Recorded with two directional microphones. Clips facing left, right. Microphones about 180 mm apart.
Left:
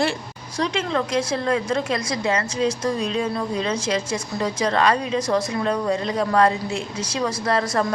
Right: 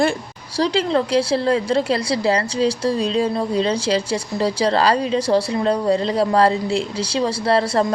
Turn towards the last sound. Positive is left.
turn(degrees=-30)  # may be behind; listen again after turning